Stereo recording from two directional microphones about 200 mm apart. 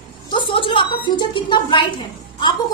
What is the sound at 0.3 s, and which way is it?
A woman's voice, 25° left (ahead or behind).